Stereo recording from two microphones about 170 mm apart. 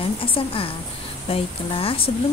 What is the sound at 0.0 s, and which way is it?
A woman's voice, 30° left (ahead or behind).